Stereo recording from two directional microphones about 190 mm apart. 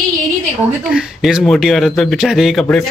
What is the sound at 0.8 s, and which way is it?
Speech, 5° right (ahead or behind).